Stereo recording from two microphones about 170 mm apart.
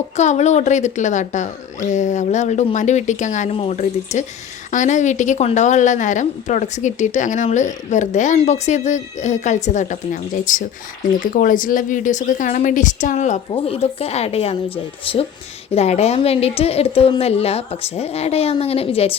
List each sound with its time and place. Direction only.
0.2 s a woman's voice: 45° left (ahead or behind)